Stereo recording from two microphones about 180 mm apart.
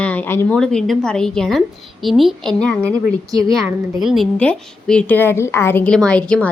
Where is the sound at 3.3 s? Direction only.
20° right (ahead or behind).